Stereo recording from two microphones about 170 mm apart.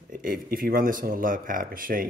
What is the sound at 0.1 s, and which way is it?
Speech, 55° right (ahead or behind).